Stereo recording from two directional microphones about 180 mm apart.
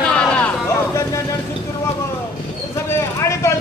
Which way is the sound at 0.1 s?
10° left (ahead or behind).